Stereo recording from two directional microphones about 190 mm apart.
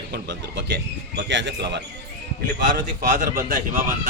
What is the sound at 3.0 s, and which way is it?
Speech, 45° right (ahead or behind).